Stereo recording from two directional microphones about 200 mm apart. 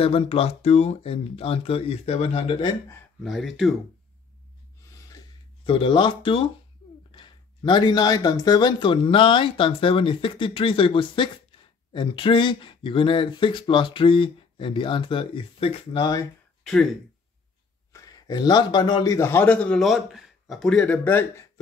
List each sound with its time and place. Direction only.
0.0 s speech: 30° left (ahead or behind)
3.3 s speech: centre (ahead or behind)
4.9 s a sound: 20° left (ahead or behind)
7.1 s speech: 25° left (ahead or behind)
17.9 s a man's voice: 20° left (ahead or behind)